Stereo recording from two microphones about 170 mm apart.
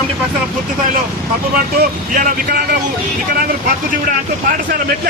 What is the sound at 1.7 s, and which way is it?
Speech, 55° right (ahead or behind).